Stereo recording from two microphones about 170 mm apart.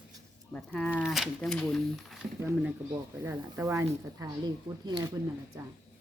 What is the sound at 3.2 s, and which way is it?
A man's voice, 15° right (ahead or behind).